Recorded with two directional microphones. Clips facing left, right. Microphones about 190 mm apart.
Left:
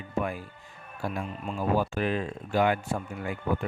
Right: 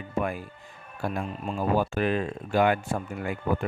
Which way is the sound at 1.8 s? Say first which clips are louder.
Right 2 dB; 55° right (ahead or behind).